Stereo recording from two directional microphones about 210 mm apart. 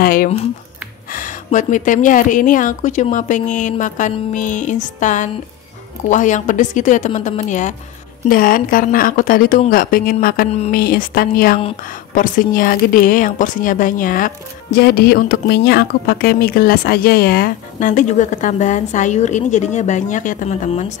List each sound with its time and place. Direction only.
0.0 s a woman's voice: 45° left (ahead or behind)
10.5 s a woman's voice: 30° left (ahead or behind)
10.8 s a woman's voice: 45° left (ahead or behind)